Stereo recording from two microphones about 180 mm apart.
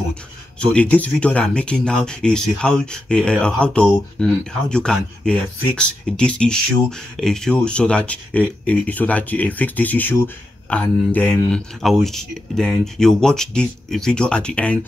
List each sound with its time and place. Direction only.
0.1 s speech: 5° left (ahead or behind)